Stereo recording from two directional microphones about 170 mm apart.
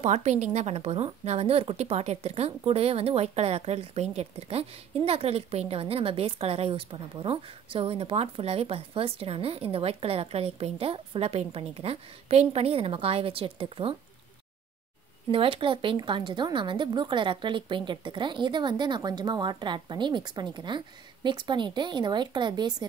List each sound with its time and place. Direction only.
0.0 s speech: 40° right (ahead or behind)
15.3 s speech: 30° right (ahead or behind)